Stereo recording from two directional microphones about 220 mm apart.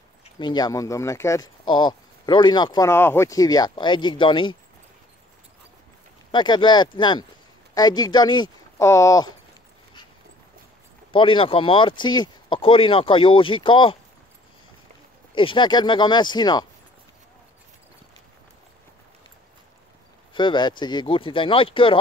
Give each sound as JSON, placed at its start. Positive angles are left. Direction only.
{"t": 0.4, "sound": "speech", "side_deg": 20}
{"t": 6.3, "sound": "speech", "side_deg": 20}
{"t": 11.1, "sound": "speech", "side_deg": 25}
{"t": 15.3, "sound": "speech", "side_deg": 20}
{"t": 20.3, "sound": "speech", "side_deg": 20}